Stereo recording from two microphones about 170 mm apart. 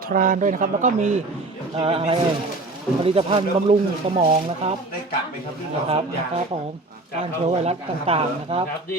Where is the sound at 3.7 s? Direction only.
45° right (ahead or behind).